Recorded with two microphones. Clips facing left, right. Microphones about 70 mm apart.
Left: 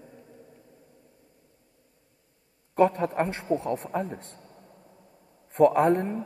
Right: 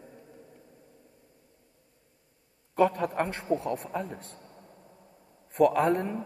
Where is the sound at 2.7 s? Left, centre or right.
Left.